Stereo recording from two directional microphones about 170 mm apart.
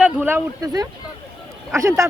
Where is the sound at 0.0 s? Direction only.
10° right (ahead or behind).